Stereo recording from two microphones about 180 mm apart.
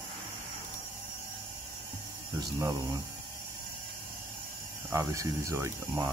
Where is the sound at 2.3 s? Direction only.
20° right (ahead or behind).